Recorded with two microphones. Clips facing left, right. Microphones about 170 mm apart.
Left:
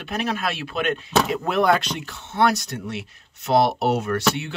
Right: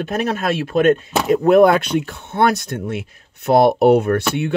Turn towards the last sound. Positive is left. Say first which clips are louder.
# right 5 dB
turn(degrees=-55)  # may be behind; listen again after turning